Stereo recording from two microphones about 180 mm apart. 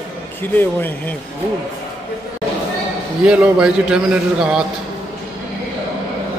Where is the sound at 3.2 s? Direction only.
5° right (ahead or behind).